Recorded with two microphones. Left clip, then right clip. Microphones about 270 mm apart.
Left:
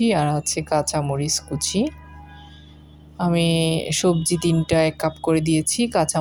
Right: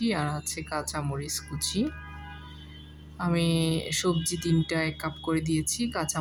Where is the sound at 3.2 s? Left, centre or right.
Centre.